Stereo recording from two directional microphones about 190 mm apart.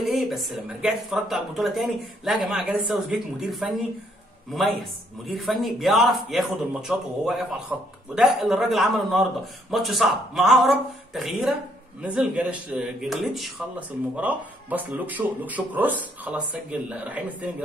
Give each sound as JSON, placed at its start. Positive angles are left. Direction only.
{"t": 0.0, "sound": "speech", "side_deg": 0}
{"t": 5.2, "sound": "speech", "side_deg": 0}